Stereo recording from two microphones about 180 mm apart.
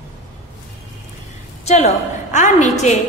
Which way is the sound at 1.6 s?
40° left (ahead or behind).